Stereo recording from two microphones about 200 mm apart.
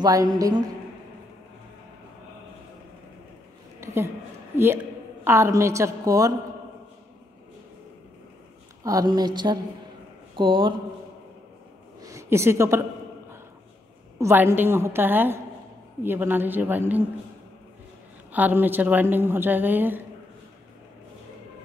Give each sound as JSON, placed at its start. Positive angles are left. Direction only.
{"t": 0.0, "sound": "a woman's voice", "side_deg": -15}
{"t": 3.8, "sound": "a woman's voice", "side_deg": -15}
{"t": 5.2, "sound": "a woman's voice", "side_deg": -15}
{"t": 8.8, "sound": "a woman's voice", "side_deg": -20}
{"t": 12.0, "sound": "a sound", "side_deg": -15}
{"t": 14.1, "sound": "a woman's voice", "side_deg": -10}
{"t": 18.3, "sound": "a woman's voice", "side_deg": -10}